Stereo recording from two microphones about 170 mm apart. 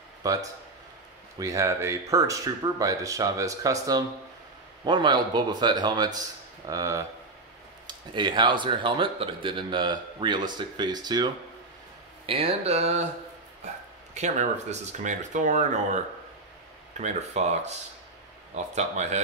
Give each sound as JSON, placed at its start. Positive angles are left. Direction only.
{"t": 0.2, "sound": "speech", "side_deg": -20}
{"t": 12.3, "sound": "speech", "side_deg": -35}
{"t": 14.1, "sound": "speech", "side_deg": -40}
{"t": 17.0, "sound": "speech", "side_deg": -40}